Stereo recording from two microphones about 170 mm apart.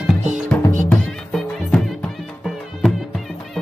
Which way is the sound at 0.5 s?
10° left (ahead or behind).